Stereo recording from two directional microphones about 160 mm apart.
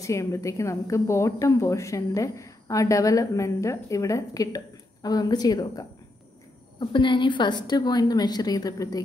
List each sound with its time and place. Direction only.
0.0 s a woman's voice: 20° left (ahead or behind)